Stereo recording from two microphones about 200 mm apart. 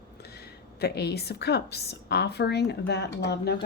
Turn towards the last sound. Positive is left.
turn(degrees=55)  # may be behind; listen again after turning